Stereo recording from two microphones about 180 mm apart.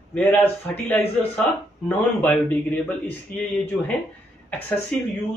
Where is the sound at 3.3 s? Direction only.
50° left (ahead or behind).